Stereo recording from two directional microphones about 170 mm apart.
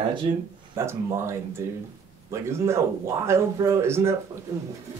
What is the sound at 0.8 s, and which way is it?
Speech, 15° right (ahead or behind).